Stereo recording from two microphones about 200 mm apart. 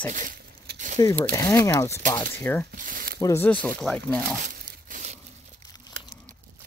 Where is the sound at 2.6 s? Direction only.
45° right (ahead or behind).